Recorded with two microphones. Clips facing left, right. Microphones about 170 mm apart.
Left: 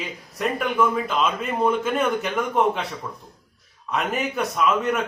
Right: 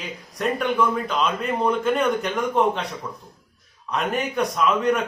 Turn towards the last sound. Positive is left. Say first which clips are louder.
# right 1 dB
turn(degrees=5)  # may be behind; listen again after turning